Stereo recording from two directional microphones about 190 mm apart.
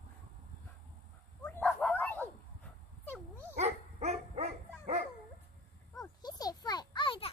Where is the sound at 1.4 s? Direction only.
10° left (ahead or behind).